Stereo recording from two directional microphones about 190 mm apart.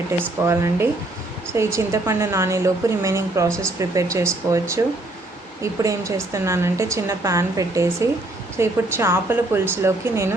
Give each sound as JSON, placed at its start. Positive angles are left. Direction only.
{"t": 0.2, "sound": "a woman's voice", "side_deg": -15}
{"t": 5.8, "sound": "a woman's voice", "side_deg": -15}